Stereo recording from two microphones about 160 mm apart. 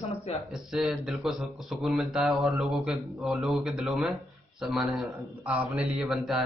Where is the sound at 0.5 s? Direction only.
Centre (ahead or behind).